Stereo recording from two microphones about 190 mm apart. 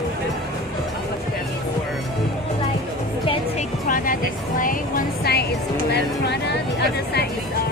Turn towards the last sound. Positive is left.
turn(degrees=60)  # may be behind; listen again after turning